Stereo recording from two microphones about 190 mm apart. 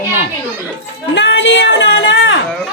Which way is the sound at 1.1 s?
70° left (ahead or behind).